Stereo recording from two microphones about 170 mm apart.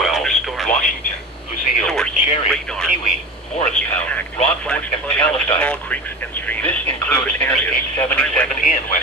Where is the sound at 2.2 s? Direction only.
40° left (ahead or behind).